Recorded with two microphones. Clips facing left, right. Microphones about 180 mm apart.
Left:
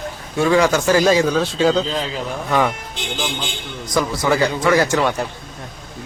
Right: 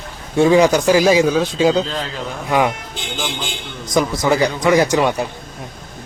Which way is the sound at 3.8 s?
20° right (ahead or behind).